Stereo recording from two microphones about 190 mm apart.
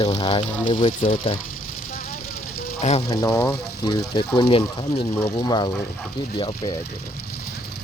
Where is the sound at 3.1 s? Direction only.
15° left (ahead or behind).